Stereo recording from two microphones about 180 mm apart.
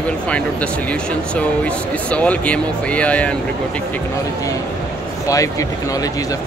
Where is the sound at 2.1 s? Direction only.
5° left (ahead or behind).